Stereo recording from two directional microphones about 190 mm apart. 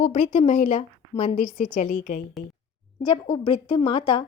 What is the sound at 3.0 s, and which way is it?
Speech, 25° left (ahead or behind).